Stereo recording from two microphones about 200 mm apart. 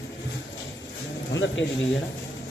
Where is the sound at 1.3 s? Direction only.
70° left (ahead or behind).